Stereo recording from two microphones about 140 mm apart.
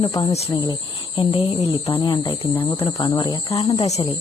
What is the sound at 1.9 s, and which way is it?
Speech, 35° left (ahead or behind).